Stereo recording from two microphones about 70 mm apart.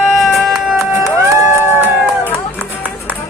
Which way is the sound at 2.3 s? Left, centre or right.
Centre.